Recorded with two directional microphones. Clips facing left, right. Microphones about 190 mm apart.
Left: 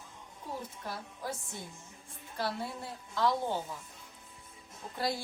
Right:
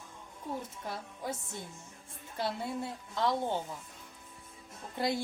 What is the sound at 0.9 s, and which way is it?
Speech, 20° right (ahead or behind).